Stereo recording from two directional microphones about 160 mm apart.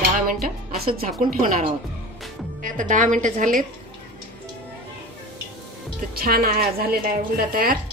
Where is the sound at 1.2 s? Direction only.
60° right (ahead or behind).